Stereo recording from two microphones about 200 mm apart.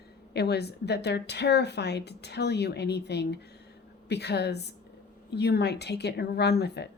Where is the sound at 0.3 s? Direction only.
55° left (ahead or behind).